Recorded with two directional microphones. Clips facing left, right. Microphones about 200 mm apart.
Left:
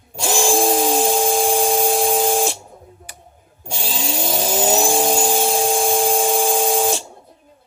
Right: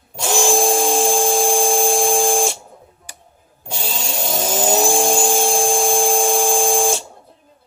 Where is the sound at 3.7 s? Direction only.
Centre (ahead or behind).